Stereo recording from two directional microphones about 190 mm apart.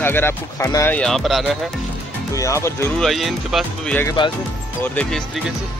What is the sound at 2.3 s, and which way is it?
Speech, 15° left (ahead or behind).